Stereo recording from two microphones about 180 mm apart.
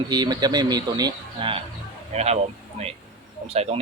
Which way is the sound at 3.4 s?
35° right (ahead or behind).